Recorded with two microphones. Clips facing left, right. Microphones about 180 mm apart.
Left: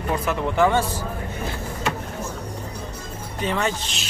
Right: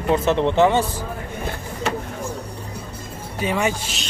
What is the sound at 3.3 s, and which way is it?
Speech, 10° right (ahead or behind).